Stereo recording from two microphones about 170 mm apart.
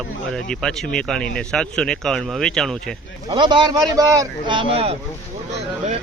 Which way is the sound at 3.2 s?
30° right (ahead or behind).